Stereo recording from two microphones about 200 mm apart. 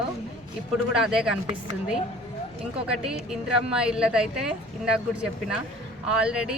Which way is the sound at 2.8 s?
5° right (ahead or behind).